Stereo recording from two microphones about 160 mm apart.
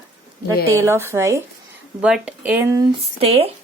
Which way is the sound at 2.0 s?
5° right (ahead or behind).